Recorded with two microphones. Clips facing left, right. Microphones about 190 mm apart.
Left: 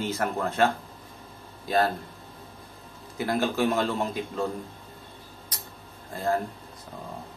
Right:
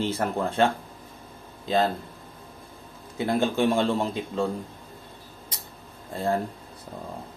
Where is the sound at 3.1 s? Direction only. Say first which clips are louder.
Right 2 dB; 25° right (ahead or behind).